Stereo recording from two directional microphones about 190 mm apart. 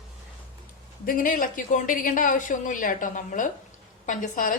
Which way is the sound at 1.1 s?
45° left (ahead or behind).